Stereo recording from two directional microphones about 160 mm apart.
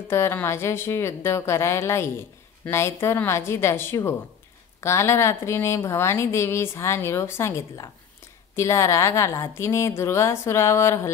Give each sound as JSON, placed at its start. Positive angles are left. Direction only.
{"t": 0.1, "sound": "a woman's voice", "side_deg": 15}